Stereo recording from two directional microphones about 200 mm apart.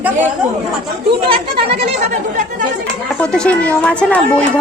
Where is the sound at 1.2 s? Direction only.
25° right (ahead or behind).